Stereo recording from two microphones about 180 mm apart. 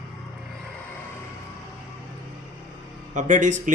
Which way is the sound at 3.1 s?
45° right (ahead or behind).